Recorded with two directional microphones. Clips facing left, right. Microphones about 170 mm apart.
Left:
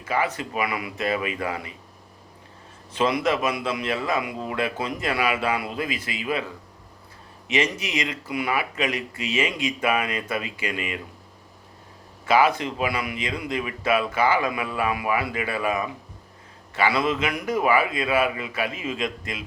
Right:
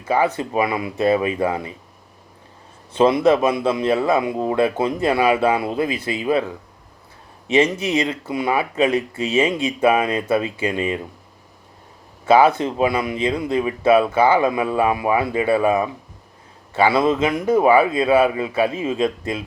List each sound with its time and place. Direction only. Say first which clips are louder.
0.1 s speech: right 7 dB; 30° right (ahead or behind)
2.9 s speech: right 8 dB; 30° right (ahead or behind)
7.5 s speech: right 8 dB; 30° right (ahead or behind)
12.3 s speech: right 6 dB; 30° right (ahead or behind)